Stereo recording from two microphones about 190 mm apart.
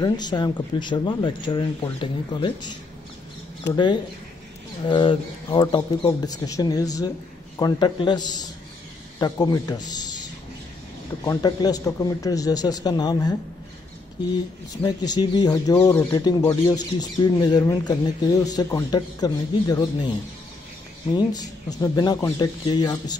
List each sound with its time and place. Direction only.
0.0 s speech: 20° left (ahead or behind)
11.2 s speech: 20° left (ahead or behind)
14.8 s speech: 20° left (ahead or behind)
21.1 s speech: 20° left (ahead or behind)